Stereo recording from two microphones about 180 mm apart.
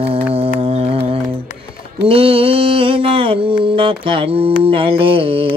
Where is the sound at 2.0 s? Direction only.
30° right (ahead or behind).